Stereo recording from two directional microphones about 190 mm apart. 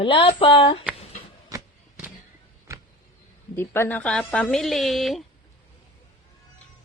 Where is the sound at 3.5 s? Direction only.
10° left (ahead or behind).